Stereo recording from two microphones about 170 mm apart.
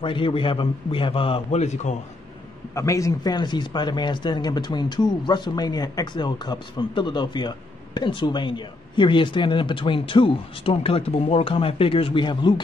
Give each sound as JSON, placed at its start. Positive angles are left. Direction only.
{"t": 0.0, "sound": "a man's voice", "side_deg": 30}
{"t": 2.7, "sound": "speech", "side_deg": 20}